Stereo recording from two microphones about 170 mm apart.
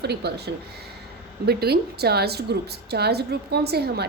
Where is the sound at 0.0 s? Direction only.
75° right (ahead or behind).